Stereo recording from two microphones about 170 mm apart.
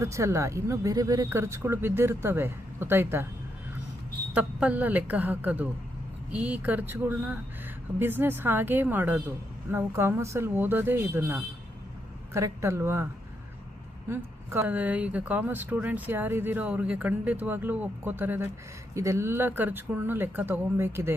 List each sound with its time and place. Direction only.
0.0 s speech: 15° right (ahead or behind)
4.4 s speech: 10° right (ahead or behind)
14.1 s speech: 15° right (ahead or behind)